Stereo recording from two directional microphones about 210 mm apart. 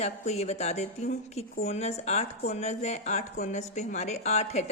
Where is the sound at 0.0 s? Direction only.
30° left (ahead or behind).